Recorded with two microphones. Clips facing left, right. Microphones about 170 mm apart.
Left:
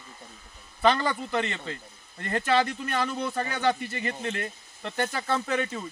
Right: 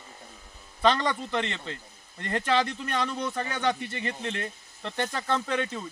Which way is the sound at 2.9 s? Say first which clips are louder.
Left 1 dB; 5° left (ahead or behind).